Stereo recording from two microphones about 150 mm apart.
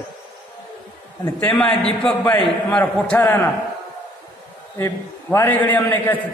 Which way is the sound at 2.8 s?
15° left (ahead or behind).